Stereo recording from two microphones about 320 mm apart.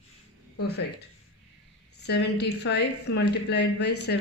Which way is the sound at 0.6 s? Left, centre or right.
Left.